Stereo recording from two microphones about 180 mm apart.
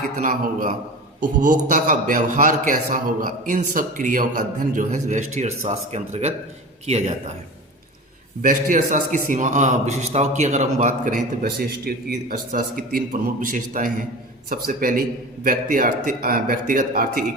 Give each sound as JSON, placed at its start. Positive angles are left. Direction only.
{"t": 0.2, "sound": "a man's voice", "side_deg": -50}
{"t": 8.4, "sound": "a man's voice", "side_deg": -50}